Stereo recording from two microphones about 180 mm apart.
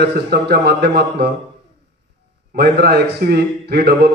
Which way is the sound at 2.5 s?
60° right (ahead or behind).